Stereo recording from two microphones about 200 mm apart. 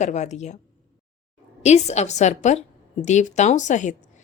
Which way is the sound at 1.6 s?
35° left (ahead or behind).